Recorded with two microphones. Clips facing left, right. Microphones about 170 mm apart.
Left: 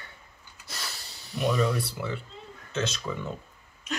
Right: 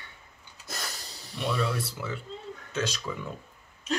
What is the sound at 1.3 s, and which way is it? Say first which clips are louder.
Speech: left 4 dB; 10° left (ahead or behind).